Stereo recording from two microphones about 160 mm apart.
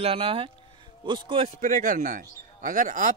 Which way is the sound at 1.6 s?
50° right (ahead or behind).